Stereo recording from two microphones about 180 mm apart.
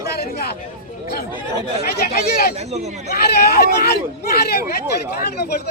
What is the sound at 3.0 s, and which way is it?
Speech, 65° left (ahead or behind).